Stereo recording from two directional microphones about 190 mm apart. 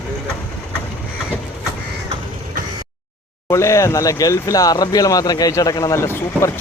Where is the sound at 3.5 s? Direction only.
15° left (ahead or behind).